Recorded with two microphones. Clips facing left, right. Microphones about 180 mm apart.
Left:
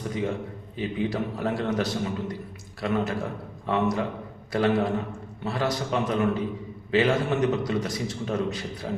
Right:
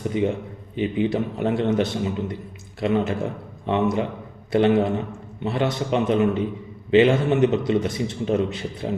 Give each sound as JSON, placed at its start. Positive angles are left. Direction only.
{"t": 0.8, "sound": "a man's voice", "side_deg": -25}